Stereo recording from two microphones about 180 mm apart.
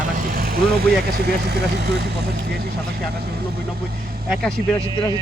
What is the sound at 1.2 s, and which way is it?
Speech, 65° right (ahead or behind).